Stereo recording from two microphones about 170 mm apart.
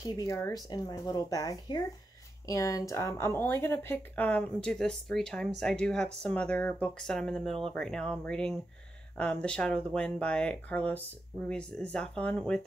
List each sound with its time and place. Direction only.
0.3 s speech: 20° left (ahead or behind)